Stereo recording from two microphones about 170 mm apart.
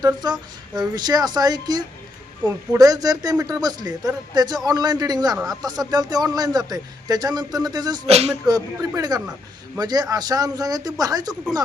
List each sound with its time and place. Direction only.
0.0 s a man's voice: 25° right (ahead or behind)
8.0 s speech: 40° right (ahead or behind)
8.4 s a man's voice: 20° right (ahead or behind)